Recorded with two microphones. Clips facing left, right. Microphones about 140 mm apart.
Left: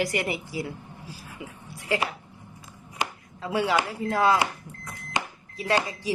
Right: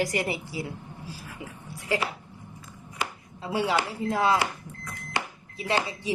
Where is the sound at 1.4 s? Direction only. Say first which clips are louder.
Left 1 dB; 35° right (ahead or behind).